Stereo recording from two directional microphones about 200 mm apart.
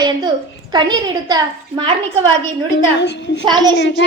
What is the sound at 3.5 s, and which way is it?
Speech, 20° right (ahead or behind).